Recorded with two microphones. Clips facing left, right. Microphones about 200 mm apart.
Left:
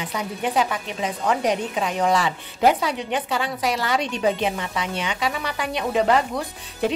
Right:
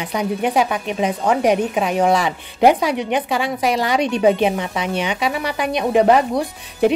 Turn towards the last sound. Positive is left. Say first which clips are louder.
# right 7 dB
turn(degrees=-15)  # may be behind; listen again after turning